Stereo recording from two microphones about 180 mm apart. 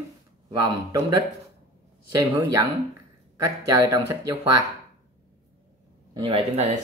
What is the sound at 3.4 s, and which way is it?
Speech, 20° right (ahead or behind).